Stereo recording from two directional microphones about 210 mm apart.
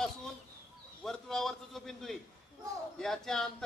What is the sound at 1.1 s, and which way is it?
Speech, centre (ahead or behind).